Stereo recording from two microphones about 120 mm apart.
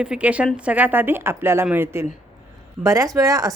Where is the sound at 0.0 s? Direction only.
10° right (ahead or behind).